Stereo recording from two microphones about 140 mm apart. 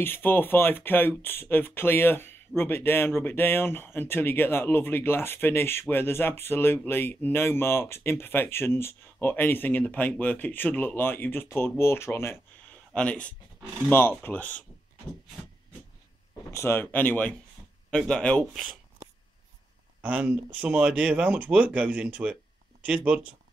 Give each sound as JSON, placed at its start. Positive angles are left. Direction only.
{"t": 0.0, "sound": "speech", "side_deg": 15}
{"t": 12.9, "sound": "speech", "side_deg": 10}
{"t": 16.5, "sound": "speech", "side_deg": 15}
{"t": 20.0, "sound": "speech", "side_deg": -10}